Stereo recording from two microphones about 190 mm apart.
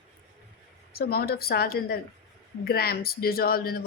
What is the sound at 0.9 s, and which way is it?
Speech, 55° left (ahead or behind).